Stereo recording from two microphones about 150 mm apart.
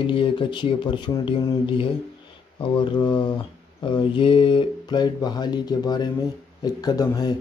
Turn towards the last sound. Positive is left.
turn(degrees=25)  # may be behind; listen again after turning